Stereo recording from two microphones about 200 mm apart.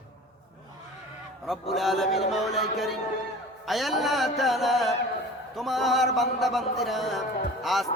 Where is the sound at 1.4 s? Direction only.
Centre (ahead or behind).